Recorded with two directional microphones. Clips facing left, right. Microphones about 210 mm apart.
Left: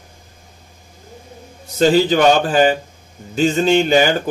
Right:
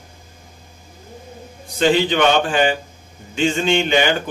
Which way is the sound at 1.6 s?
40° left (ahead or behind).